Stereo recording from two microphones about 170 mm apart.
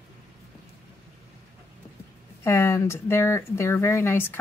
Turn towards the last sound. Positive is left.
turn(degrees=15)  # may be behind; listen again after turning